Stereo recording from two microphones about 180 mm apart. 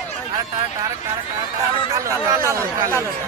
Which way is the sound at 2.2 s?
15° right (ahead or behind).